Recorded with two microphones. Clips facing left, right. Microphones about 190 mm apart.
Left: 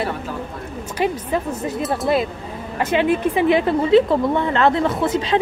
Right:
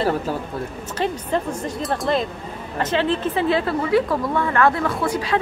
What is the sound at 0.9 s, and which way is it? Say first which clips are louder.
Speech: left 2 dB; 10° left (ahead or behind).